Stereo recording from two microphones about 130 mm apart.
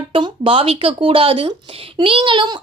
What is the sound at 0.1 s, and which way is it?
Speech, 45° right (ahead or behind).